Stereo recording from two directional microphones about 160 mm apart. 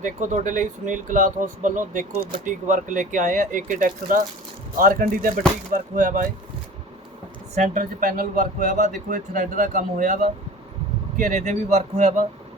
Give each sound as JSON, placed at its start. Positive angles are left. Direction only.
{"t": 0.0, "sound": "speech", "side_deg": -50}
{"t": 7.5, "sound": "speech", "side_deg": -50}